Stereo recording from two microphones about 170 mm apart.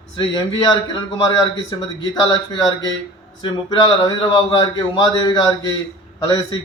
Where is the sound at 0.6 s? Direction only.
25° left (ahead or behind).